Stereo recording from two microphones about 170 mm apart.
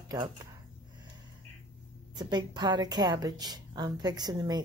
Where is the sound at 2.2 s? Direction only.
25° right (ahead or behind).